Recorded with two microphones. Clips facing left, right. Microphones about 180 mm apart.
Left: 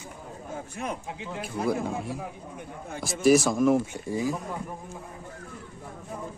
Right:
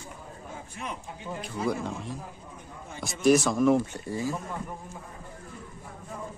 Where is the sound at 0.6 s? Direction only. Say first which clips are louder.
Left 5 dB; 45° left (ahead or behind).